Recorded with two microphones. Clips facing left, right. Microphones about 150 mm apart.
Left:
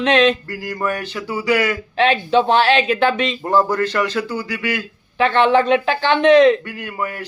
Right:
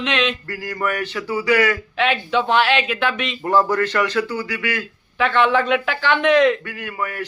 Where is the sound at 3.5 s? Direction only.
15° left (ahead or behind).